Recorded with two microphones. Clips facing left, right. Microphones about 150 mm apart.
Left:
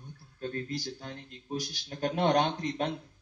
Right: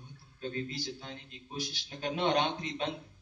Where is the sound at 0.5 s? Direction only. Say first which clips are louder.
Left 2 dB; 45° left (ahead or behind).